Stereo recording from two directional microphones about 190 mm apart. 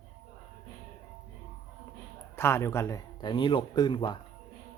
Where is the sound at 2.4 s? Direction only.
15° left (ahead or behind).